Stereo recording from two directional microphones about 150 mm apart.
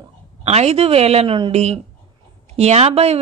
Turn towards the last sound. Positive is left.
turn(degrees=-45)  # may be behind; listen again after turning